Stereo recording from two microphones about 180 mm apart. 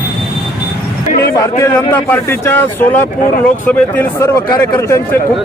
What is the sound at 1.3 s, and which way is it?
Speech, 15° left (ahead or behind).